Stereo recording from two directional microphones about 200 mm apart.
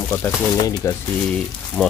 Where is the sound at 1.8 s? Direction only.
5° left (ahead or behind).